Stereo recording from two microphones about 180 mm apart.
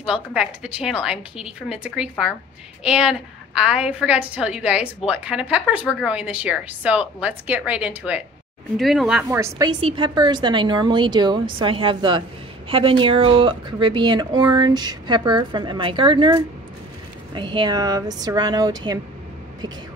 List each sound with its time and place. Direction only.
0.0 s a woman's voice: 5° right (ahead or behind)
9.4 s a woman's voice: 25° right (ahead or behind)